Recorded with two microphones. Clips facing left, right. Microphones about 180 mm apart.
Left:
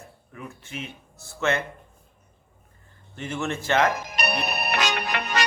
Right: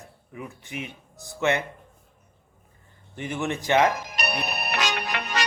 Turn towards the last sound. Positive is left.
turn(degrees=55)  # may be behind; listen again after turning